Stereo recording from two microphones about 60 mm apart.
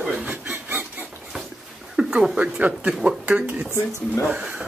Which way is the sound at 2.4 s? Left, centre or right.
Right.